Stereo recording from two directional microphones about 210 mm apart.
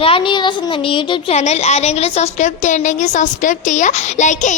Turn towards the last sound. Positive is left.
turn(degrees=35)  # may be behind; listen again after turning